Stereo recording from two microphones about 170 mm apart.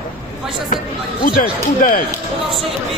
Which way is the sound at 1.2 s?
55° left (ahead or behind).